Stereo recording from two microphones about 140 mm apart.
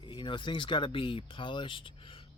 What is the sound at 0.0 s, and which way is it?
Speech, 35° left (ahead or behind).